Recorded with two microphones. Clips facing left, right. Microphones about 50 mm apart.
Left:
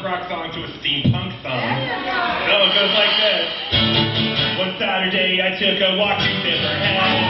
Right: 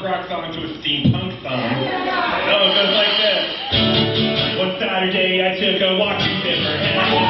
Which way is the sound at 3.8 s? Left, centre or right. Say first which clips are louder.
Right 2 dB; centre.